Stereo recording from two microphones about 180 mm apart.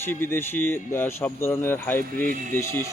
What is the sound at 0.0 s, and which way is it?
Speech, 10° left (ahead or behind).